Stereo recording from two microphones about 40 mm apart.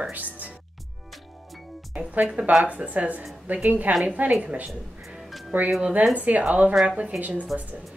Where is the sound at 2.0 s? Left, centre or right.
Right.